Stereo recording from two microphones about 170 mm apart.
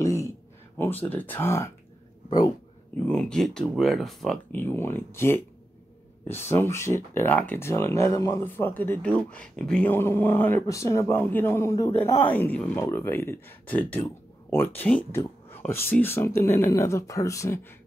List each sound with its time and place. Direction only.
0.0 s a sound: 20° left (ahead or behind)
0.7 s speech: 10° left (ahead or behind)
3.1 s speech: 5° left (ahead or behind)